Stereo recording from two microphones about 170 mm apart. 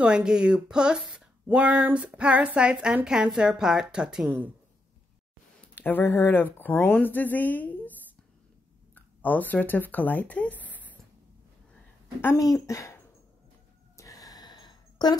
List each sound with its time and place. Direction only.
0.0 s speech: 5° right (ahead or behind)
5.8 s a woman's voice: 10° left (ahead or behind)
8.9 s speech: 10° left (ahead or behind)
12.2 s a woman's voice: 15° left (ahead or behind)
13.9 s a sound: 20° left (ahead or behind)